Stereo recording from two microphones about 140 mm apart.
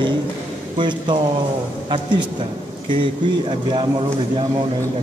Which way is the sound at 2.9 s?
35° right (ahead or behind).